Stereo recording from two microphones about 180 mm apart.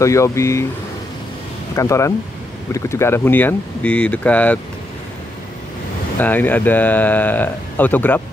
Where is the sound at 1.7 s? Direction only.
15° left (ahead or behind).